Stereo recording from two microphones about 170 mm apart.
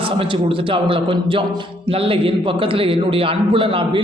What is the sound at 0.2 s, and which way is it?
A man's voice, 30° right (ahead or behind).